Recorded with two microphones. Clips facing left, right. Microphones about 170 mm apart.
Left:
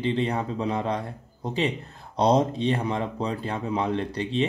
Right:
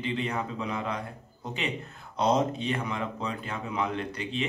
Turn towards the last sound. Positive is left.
turn(degrees=35)  # may be behind; listen again after turning